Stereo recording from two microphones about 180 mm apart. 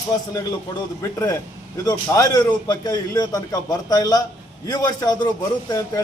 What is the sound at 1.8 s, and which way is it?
A man's voice, 20° left (ahead or behind).